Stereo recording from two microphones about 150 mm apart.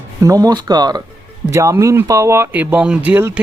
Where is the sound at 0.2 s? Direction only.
25° right (ahead or behind).